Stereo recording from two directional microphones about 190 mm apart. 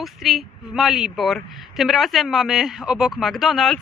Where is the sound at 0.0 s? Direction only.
Centre (ahead or behind).